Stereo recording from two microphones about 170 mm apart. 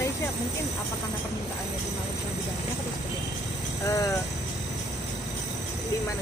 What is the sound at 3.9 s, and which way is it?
Speech, 20° left (ahead or behind).